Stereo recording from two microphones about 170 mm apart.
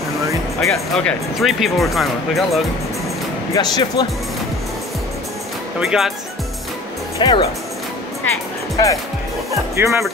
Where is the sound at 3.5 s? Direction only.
25° left (ahead or behind).